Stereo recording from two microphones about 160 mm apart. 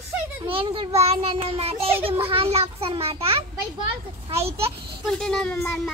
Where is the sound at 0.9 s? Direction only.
40° right (ahead or behind).